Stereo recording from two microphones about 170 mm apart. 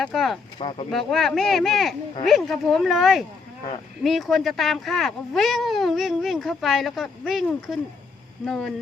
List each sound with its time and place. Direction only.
0.0 s speech: centre (ahead or behind)
0.6 s speech: 35° left (ahead or behind)
0.9 s speech: centre (ahead or behind)